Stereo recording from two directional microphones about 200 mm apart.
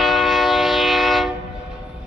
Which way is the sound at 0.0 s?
Centre (ahead or behind).